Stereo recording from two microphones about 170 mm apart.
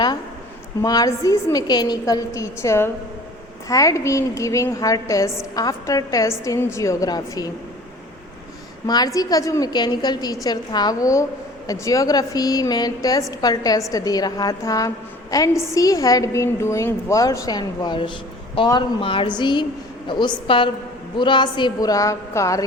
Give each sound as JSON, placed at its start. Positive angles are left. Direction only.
{"t": 0.8, "sound": "a woman's voice", "side_deg": 20}
{"t": 8.9, "sound": "a woman's voice", "side_deg": 20}